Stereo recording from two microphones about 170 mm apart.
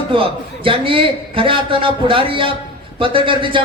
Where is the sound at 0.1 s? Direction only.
30° right (ahead or behind).